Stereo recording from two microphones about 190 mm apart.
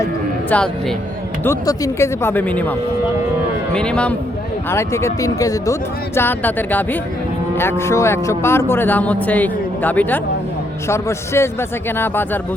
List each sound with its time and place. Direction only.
0.5 s a man's voice: 5° left (ahead or behind)
1.5 s speech: 15° left (ahead or behind)
3.8 s a man's voice: 5° left (ahead or behind)